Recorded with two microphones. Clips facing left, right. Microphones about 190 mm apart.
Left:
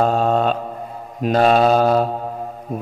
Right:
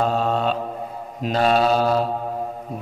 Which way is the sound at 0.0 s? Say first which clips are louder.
Left 4 dB; 45° left (ahead or behind).